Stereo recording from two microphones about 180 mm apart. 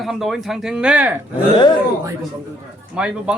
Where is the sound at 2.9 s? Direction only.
5° right (ahead or behind).